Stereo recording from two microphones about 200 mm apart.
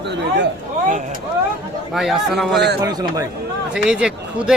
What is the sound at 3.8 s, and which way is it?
Speech, 5° right (ahead or behind).